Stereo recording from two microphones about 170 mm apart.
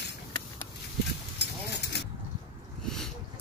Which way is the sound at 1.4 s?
80° left.